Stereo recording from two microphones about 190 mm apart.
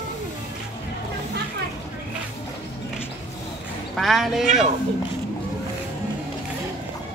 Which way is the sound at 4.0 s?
Centre (ahead or behind).